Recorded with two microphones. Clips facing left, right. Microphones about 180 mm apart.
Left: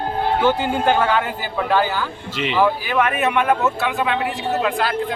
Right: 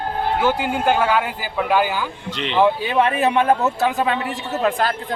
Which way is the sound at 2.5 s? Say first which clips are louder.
Right 2 dB; 25° right (ahead or behind).